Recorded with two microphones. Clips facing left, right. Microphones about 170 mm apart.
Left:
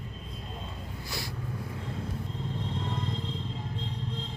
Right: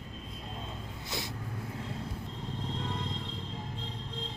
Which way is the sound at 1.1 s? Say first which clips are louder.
Right 1 dB; 20° right (ahead or behind).